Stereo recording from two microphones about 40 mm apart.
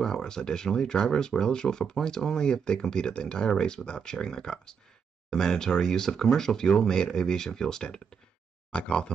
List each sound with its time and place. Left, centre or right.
0.0 s speech: centre